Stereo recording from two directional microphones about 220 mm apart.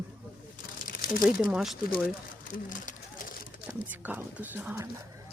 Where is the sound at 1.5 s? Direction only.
Centre (ahead or behind).